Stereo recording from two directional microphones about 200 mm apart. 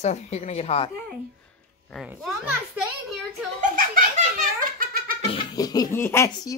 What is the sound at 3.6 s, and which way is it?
Belly laugh, 45° right (ahead or behind).